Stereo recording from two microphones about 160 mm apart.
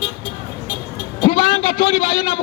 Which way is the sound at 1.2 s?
35° left (ahead or behind).